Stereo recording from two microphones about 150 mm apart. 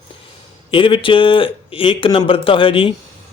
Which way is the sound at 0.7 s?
35° left (ahead or behind).